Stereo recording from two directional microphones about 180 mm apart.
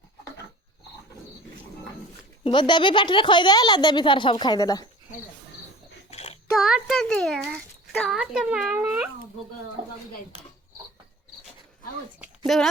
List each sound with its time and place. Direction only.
2.4 s a woman's voice: 25° left (ahead or behind)
6.1 s a sound: 35° left (ahead or behind)
6.6 s a child's voice: centre (ahead or behind)
12.5 s a child's voice: centre (ahead or behind)